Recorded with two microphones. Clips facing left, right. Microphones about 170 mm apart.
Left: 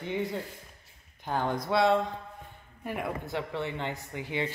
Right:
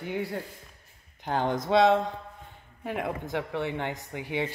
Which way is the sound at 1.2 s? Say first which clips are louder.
Right 2 dB; 20° right (ahead or behind).